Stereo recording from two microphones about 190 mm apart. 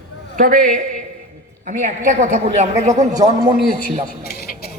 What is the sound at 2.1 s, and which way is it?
A woman's voice, 40° right (ahead or behind).